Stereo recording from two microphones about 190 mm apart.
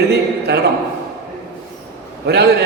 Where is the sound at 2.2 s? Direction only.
60° right (ahead or behind).